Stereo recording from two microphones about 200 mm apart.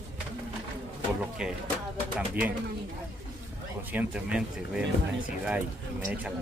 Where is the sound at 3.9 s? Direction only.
5° right (ahead or behind).